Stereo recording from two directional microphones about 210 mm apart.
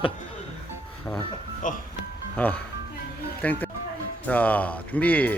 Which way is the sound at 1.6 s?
40° left (ahead or behind).